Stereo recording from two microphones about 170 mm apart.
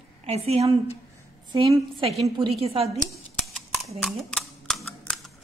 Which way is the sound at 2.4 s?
35° right (ahead or behind).